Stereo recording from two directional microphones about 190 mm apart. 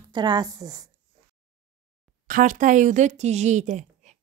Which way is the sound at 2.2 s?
45° right (ahead or behind).